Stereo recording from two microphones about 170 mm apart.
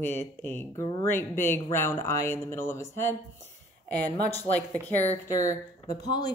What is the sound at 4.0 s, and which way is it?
Speech, 20° right (ahead or behind).